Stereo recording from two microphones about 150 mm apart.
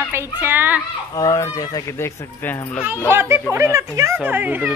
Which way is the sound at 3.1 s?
15° right (ahead or behind).